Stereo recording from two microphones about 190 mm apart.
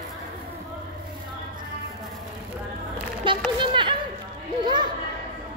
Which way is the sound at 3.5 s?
25° right (ahead or behind).